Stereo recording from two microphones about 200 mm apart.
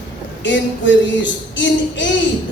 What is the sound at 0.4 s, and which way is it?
A man's voice, 65° left (ahead or behind).